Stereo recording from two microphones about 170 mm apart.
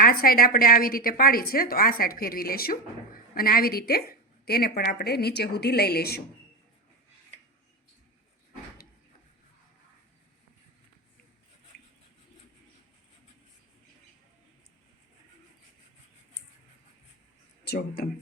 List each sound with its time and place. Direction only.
0.0 s a woman's voice: 60° left (ahead or behind)
17.7 s speech: 60° left (ahead or behind)